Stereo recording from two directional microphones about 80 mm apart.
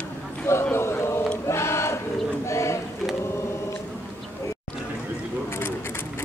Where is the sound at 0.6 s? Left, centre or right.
Left.